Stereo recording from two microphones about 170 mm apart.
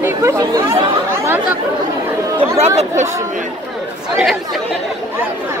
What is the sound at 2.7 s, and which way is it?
Speech, 45° right (ahead or behind).